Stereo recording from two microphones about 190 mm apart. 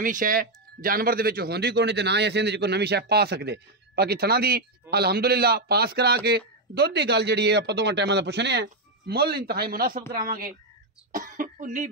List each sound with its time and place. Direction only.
0.0 s a man's voice: 45° right (ahead or behind)